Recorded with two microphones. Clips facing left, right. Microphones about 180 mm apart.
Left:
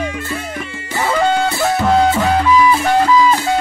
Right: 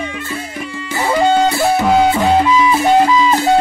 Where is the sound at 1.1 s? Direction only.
20° right (ahead or behind).